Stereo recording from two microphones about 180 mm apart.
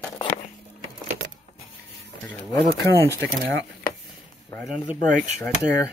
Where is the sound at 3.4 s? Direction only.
85° right.